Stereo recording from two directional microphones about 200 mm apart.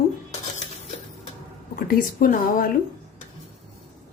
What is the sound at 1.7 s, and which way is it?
Speech, 45° left (ahead or behind).